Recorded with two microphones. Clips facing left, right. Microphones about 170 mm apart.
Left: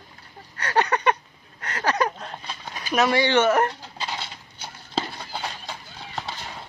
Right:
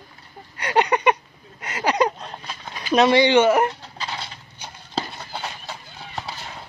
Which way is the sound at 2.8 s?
20° right (ahead or behind).